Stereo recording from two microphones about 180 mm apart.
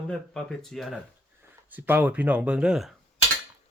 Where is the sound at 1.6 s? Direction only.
10° right (ahead or behind).